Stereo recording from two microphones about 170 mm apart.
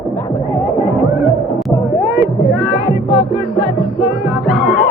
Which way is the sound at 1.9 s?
20° right (ahead or behind).